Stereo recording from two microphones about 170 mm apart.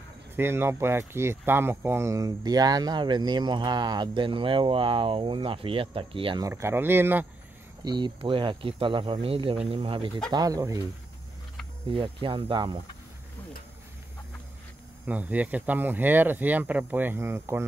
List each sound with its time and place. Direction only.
0.4 s speech: 15° right (ahead or behind); by 6.4 s 30° right (ahead or behind)
6.4 s speech: 15° right (ahead or behind)
7.8 s speech: 25° right (ahead or behind)
11.9 s speech: 30° right (ahead or behind)
15.0 s speech: 10° right (ahead or behind)